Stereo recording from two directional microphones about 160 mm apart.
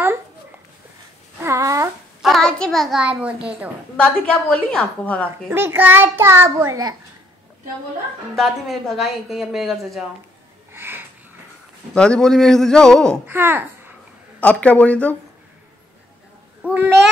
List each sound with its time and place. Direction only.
1.4 s babbling: 20° right (ahead or behind)
2.2 s a child's voice: centre (ahead or behind)
3.9 s a woman's voice: 5° left (ahead or behind)
5.5 s a child's voice: 15° right (ahead or behind)
8.4 s a woman's voice: centre (ahead or behind)
10.7 s a sound: 15° right (ahead or behind)
11.9 s a woman's voice: 5° left (ahead or behind)
13.3 s a child's voice: 15° right (ahead or behind)
14.4 s a woman's voice: 10° left (ahead or behind)
16.6 s a child's voice: 10° right (ahead or behind)